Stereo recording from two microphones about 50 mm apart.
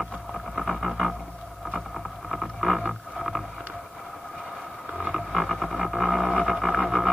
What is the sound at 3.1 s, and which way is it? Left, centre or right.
Boat, centre.